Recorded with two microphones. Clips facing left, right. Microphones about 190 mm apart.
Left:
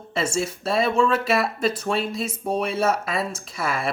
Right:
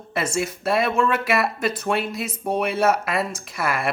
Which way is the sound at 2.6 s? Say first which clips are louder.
Right 3 dB; 60° right (ahead or behind).